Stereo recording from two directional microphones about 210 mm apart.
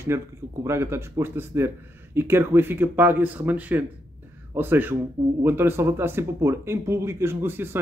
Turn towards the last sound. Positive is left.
turn(degrees=-10)  # may be behind; listen again after turning